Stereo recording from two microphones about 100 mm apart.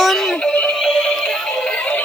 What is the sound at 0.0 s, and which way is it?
Synthetic singing, centre (ahead or behind).